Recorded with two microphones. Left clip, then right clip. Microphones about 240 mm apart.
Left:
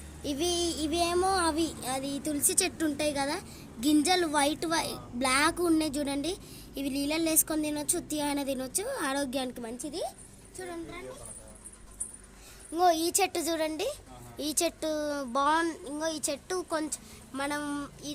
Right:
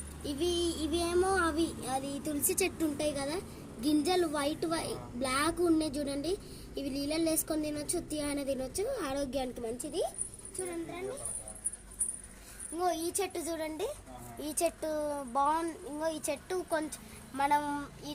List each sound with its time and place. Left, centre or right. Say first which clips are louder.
0.3 s child singing: left 2 dB; left
12.7 s child singing: left 7 dB; left